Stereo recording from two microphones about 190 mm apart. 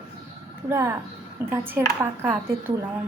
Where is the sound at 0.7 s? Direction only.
15° right (ahead or behind).